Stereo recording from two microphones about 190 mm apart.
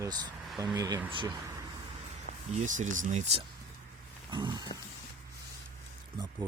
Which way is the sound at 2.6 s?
40° right (ahead or behind).